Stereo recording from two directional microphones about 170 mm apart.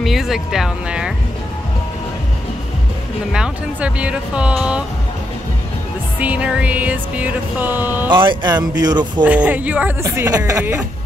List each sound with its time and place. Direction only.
0.0 s speech: centre (ahead or behind)
3.3 s speech: 5° right (ahead or behind)
6.1 s music: 10° right (ahead or behind)
8.1 s speech: 30° right (ahead or behind)
9.2 s music: 10° right (ahead or behind)